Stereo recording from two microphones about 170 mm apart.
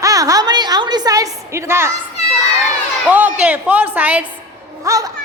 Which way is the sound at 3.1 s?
10° right (ahead or behind).